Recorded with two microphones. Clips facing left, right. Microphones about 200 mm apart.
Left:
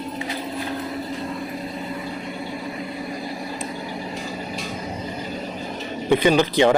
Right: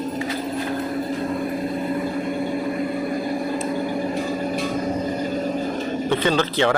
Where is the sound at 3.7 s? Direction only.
50° right (ahead or behind).